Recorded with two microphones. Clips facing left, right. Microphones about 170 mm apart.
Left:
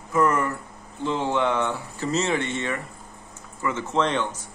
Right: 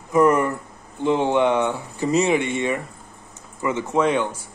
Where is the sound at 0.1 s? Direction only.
20° right (ahead or behind).